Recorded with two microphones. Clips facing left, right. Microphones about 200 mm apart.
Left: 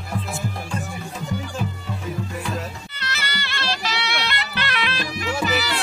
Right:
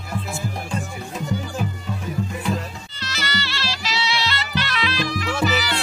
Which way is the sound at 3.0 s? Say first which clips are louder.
Right 3 dB; 60° left (ahead or behind).